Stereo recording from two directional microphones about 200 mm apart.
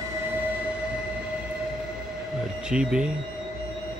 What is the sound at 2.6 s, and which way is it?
Speech, 5° right (ahead or behind).